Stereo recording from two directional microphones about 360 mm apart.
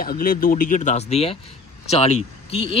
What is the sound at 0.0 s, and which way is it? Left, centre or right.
Speech, left.